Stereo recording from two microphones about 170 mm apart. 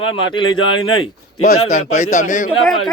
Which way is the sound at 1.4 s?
45° left (ahead or behind).